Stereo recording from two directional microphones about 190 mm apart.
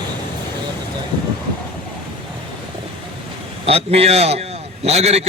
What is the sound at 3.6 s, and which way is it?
A man's voice, 30° right (ahead or behind).